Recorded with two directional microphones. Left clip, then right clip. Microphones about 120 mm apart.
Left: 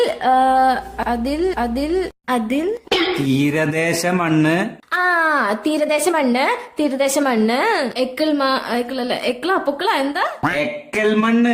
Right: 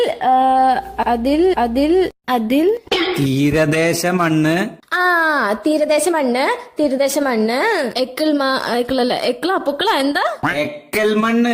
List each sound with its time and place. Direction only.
0.0 s a woman's voice: 25° right (ahead or behind)
2.9 s a sound: centre (ahead or behind)
3.2 s a woman's voice: 30° right (ahead or behind)
4.9 s a sound: 40° right (ahead or behind)
5.6 s a woman's voice: 35° right (ahead or behind)
6.1 s a woman's voice: 25° right (ahead or behind)
7.9 s a woman's voice: 65° right (ahead or behind)
10.6 s a woman's voice: 30° right (ahead or behind)